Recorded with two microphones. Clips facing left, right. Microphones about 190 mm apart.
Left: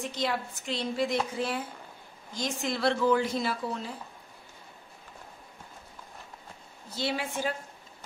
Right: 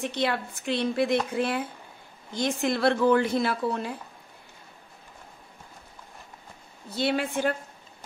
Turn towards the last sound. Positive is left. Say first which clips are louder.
# right 5 dB
turn(degrees=-60)  # may be behind; listen again after turning